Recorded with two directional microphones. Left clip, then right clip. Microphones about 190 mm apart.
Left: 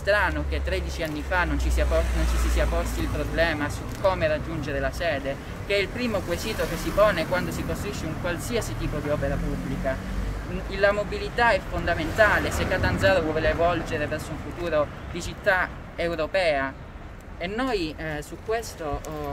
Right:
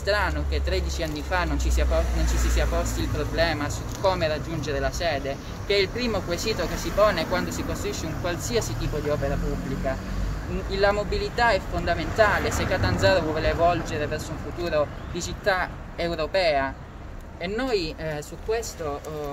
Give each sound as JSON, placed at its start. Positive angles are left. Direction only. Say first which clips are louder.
{"t": 0.0, "sound": "speech", "louder": "left 2 dB", "side_deg": -5}
{"t": 3.3, "sound": "speech", "louder": "even", "side_deg": -5}
{"t": 9.9, "sound": "speech", "louder": "left 2 dB", "side_deg": -5}